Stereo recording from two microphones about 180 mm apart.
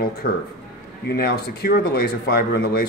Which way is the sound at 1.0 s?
60° left (ahead or behind).